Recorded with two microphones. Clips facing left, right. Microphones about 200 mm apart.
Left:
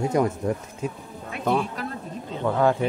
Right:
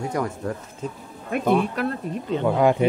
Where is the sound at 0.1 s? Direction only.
20° left (ahead or behind).